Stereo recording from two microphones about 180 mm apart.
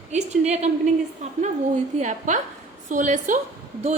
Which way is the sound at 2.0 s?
40° right (ahead or behind).